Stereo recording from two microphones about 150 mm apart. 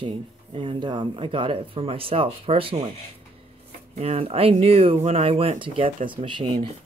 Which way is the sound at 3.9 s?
45° right (ahead or behind).